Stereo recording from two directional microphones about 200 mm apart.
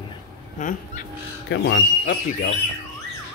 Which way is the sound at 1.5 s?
55° left (ahead or behind).